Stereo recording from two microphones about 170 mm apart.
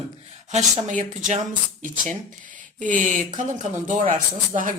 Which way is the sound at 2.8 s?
50° right (ahead or behind).